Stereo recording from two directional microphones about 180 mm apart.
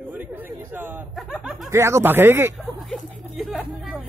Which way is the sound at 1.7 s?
15° right (ahead or behind).